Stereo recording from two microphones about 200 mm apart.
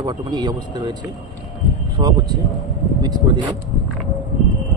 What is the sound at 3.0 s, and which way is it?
Speech, 20° right (ahead or behind).